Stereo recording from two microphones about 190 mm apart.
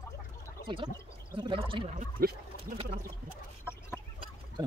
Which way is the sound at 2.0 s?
50° right (ahead or behind).